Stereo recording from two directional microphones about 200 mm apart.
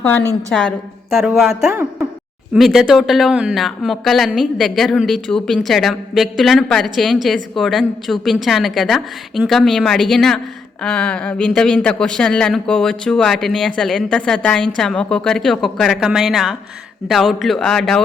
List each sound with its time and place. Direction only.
0.0 s a woman's voice: 5° left (ahead or behind)